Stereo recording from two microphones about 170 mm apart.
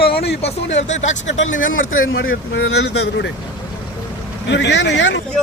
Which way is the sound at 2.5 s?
75° left (ahead or behind).